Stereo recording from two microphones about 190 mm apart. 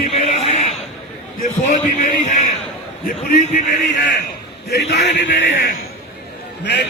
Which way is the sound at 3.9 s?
65° left (ahead or behind).